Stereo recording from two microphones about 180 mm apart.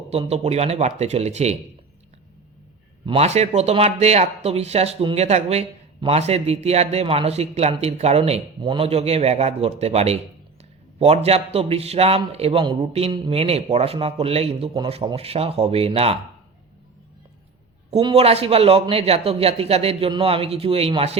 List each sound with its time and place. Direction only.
0.1 s speech: 35° right (ahead or behind)
3.1 s speech: 35° right (ahead or behind)
18.0 s speech: 30° right (ahead or behind)